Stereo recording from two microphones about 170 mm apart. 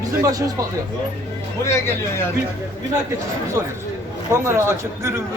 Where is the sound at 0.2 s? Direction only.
20° right (ahead or behind).